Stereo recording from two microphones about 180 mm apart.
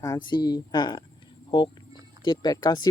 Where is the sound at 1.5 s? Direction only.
30° left (ahead or behind).